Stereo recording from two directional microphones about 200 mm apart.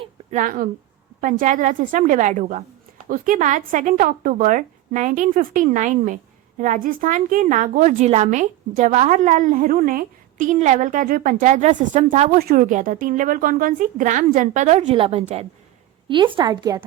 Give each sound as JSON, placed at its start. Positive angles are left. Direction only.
{"t": 0.0, "sound": "a sound", "side_deg": -35}
{"t": 1.2, "sound": "a woman's voice", "side_deg": -40}
{"t": 12.4, "sound": "a woman's voice", "side_deg": -45}